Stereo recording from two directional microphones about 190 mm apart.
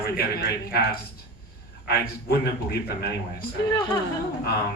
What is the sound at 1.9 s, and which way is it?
A man's voice, 55° left (ahead or behind).